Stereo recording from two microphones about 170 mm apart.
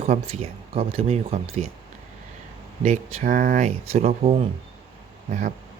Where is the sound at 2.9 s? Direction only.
45° right (ahead or behind).